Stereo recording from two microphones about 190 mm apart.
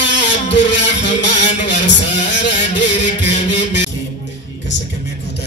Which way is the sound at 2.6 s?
40° left (ahead or behind).